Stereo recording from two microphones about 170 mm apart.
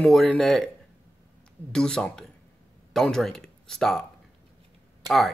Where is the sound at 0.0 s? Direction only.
5° left (ahead or behind).